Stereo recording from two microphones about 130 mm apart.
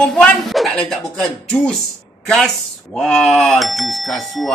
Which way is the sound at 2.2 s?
5° left (ahead or behind).